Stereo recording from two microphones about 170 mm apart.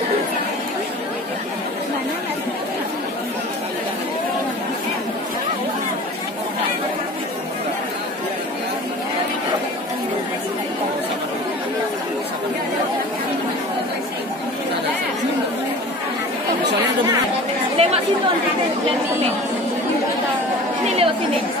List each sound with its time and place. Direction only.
17.8 s chatter: 40° right (ahead or behind)
20.8 s chatter: 40° right (ahead or behind)